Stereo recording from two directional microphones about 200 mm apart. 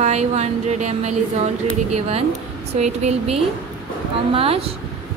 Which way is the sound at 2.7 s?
35° right (ahead or behind).